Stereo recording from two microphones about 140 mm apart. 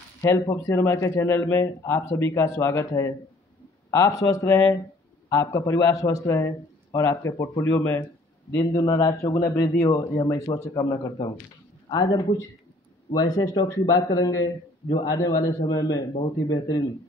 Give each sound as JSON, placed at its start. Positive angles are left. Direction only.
{"t": 0.2, "sound": "a man's voice", "side_deg": 20}